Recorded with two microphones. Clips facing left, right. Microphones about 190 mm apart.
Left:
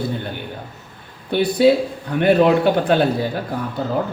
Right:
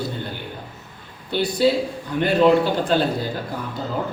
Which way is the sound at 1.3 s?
60° left (ahead or behind).